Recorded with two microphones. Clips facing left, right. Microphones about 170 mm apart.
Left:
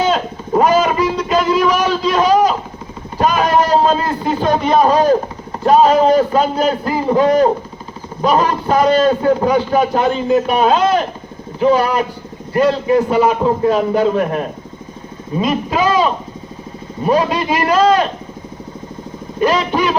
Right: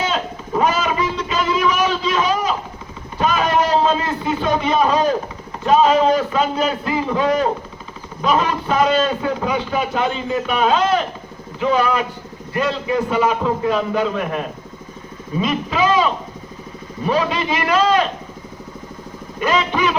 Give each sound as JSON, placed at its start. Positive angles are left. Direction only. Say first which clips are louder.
{"t": 0.1, "sound": "a sound", "louder": "left 6 dB", "side_deg": 40}
{"t": 3.2, "sound": "a man's voice", "louder": "left 4 dB", "side_deg": 40}
{"t": 19.4, "sound": "a man's voice", "louder": "left 4 dB", "side_deg": 35}